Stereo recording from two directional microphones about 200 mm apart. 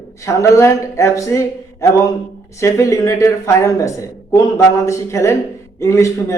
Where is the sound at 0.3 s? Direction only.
15° left (ahead or behind).